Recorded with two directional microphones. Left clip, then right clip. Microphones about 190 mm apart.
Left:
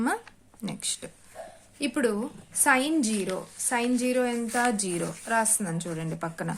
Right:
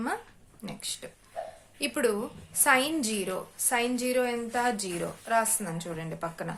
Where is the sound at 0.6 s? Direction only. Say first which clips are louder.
Left 3 dB; 35° left (ahead or behind).